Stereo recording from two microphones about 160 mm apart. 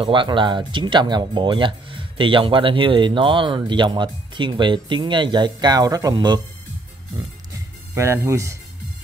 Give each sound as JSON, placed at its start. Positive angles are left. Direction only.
{"t": 0.0, "sound": "speech", "side_deg": -30}
{"t": 7.2, "sound": "music", "side_deg": -15}